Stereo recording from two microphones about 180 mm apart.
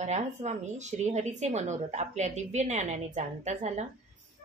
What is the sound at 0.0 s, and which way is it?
Speech, 40° right (ahead or behind).